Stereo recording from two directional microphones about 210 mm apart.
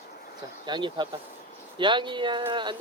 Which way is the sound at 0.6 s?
20° right (ahead or behind).